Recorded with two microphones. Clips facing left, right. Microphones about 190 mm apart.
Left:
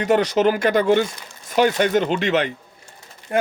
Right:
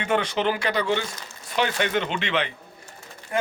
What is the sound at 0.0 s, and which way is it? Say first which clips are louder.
Speech: left 7 dB; 40° left (ahead or behind).